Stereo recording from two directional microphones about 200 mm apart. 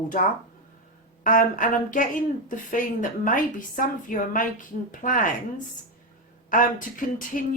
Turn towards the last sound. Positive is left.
turn(degrees=40)  # may be behind; listen again after turning